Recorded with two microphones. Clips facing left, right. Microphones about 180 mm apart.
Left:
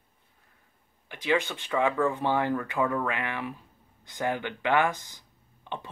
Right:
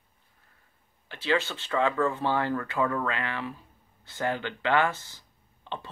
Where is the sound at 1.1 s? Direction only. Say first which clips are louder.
Left 1 dB; 15° left (ahead or behind).